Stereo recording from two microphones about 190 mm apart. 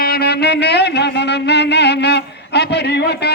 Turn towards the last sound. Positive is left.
turn(degrees=60)  # may be behind; listen again after turning